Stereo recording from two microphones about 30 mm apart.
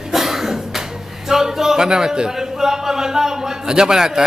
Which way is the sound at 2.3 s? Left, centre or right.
Centre.